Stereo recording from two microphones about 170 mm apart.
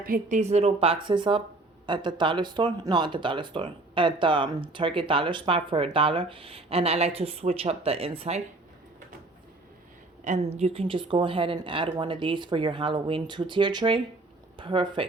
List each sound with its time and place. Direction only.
0.0 s speech: 50° right (ahead or behind); by 8.4 s 35° right (ahead or behind)
10.2 s speech: 40° right (ahead or behind)